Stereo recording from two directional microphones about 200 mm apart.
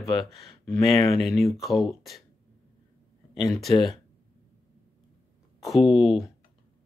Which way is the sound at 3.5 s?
Centre (ahead or behind).